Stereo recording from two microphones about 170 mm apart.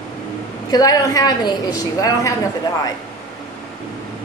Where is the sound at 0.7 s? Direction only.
20° left (ahead or behind).